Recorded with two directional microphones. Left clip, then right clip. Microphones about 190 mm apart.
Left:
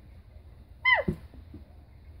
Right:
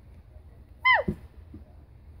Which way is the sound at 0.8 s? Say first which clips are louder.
Right 2 dB; centre (ahead or behind).